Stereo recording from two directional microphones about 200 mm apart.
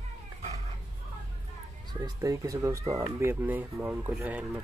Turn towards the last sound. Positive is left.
turn(degrees=-5)  # may be behind; listen again after turning